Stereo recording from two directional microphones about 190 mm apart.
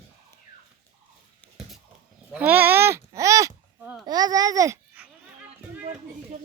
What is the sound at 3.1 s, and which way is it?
Babbling, 15° right (ahead or behind).